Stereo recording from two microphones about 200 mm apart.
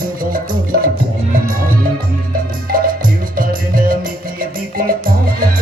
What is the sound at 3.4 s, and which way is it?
Music, 45° right (ahead or behind).